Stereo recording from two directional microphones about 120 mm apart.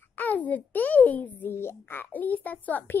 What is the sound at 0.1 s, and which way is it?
A child's voice, 15° left (ahead or behind).